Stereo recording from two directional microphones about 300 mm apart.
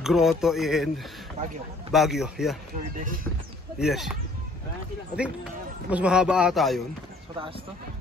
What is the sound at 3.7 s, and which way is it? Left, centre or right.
Speech, centre.